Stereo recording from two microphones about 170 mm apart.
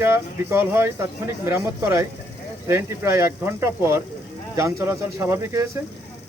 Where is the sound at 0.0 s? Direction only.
15° right (ahead or behind).